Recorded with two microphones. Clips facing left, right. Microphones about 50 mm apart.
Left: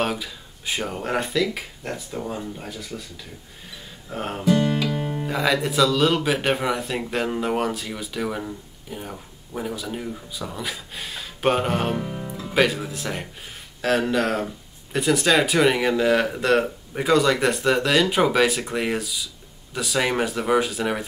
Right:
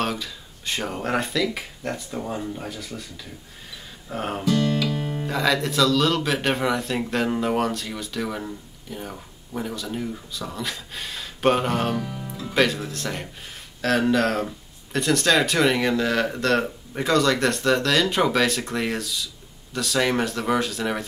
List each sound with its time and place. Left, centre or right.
0.0 s speech: centre
4.1 s speech: centre
4.5 s music: left
5.2 s speech: centre
11.9 s music: left
12.4 s speech: centre